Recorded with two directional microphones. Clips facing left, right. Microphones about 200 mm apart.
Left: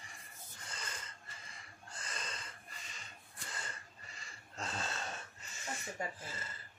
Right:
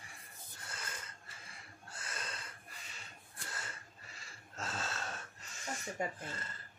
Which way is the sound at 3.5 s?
5° right (ahead or behind).